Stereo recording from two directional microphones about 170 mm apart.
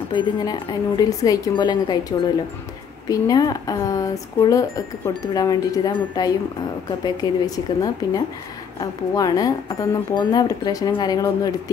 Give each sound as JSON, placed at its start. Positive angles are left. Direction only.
{"t": 0.1, "sound": "speech", "side_deg": 25}
{"t": 7.4, "sound": "speech", "side_deg": 20}